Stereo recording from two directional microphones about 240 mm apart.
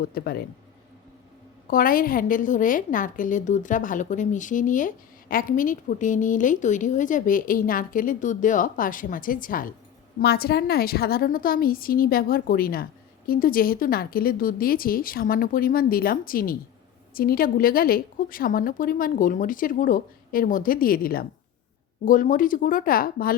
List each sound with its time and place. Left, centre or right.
0.0 s a woman's voice: left
1.6 s a woman's voice: left